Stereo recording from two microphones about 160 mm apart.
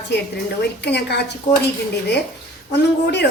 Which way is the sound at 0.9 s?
90° left.